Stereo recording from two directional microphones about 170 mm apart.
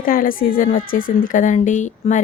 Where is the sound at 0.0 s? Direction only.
55° left (ahead or behind).